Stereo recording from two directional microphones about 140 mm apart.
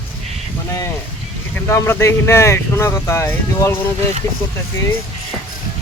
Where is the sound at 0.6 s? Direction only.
20° left (ahead or behind).